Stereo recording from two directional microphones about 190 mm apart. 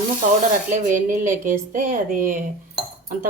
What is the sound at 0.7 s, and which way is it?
Speech, 40° right (ahead or behind).